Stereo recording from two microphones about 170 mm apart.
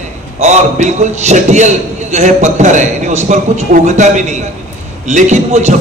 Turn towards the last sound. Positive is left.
turn(degrees=-45)  # may be behind; listen again after turning